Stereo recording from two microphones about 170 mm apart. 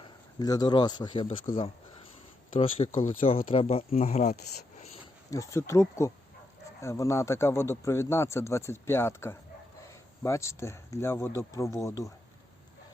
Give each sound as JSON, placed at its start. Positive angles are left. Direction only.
{"t": 0.0, "sound": "a man's voice", "side_deg": 20}
{"t": 2.6, "sound": "speech", "side_deg": 35}
{"t": 2.9, "sound": "speech", "side_deg": 50}
{"t": 3.6, "sound": "speech", "side_deg": 35}
{"t": 5.3, "sound": "speech", "side_deg": 20}